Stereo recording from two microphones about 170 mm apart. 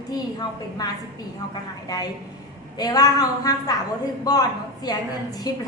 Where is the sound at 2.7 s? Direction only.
20° left (ahead or behind).